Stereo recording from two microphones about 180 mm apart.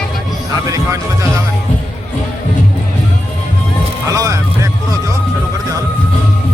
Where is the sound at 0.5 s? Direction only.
15° right (ahead or behind).